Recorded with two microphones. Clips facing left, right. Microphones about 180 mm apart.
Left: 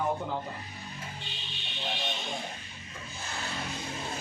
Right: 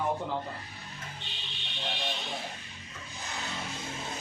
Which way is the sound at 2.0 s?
Centre (ahead or behind).